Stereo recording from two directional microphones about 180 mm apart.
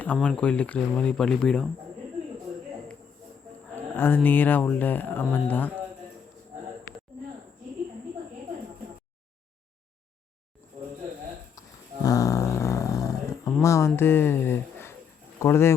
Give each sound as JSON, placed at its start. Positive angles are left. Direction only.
{"t": 0.0, "sound": "speech", "side_deg": 5}
{"t": 3.9, "sound": "speech", "side_deg": 10}
{"t": 11.6, "sound": "a sound", "side_deg": 20}
{"t": 15.4, "sound": "speech", "side_deg": 15}